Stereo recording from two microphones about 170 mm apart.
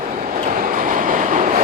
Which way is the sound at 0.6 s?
50° right (ahead or behind).